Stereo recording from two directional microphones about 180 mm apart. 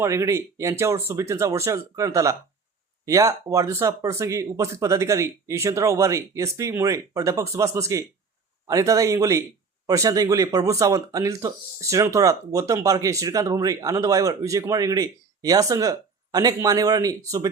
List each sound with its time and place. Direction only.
0.0 s speech: 15° right (ahead or behind)